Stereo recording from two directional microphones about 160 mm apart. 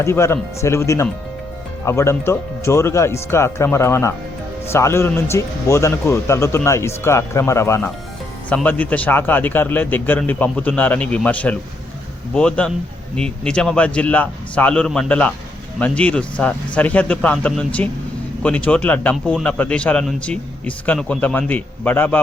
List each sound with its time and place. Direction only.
0.0 s a man's voice: 15° left (ahead or behind)